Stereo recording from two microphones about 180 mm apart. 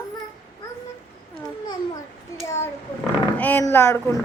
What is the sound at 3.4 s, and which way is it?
Speech, 10° left (ahead or behind).